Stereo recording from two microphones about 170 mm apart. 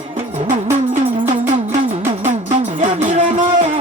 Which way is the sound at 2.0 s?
45° right (ahead or behind).